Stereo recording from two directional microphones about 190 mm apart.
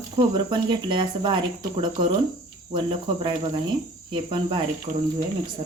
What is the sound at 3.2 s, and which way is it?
Speech, 25° right (ahead or behind).